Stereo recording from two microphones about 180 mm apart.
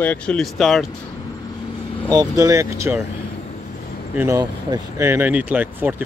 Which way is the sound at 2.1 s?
20° right (ahead or behind).